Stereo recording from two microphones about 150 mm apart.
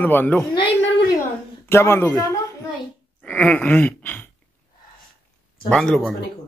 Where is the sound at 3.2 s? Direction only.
10° left (ahead or behind).